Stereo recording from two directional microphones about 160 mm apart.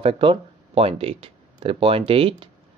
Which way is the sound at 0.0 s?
35° right (ahead or behind).